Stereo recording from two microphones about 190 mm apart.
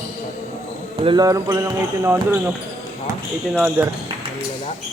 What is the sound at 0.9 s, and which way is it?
Speech, 25° right (ahead or behind).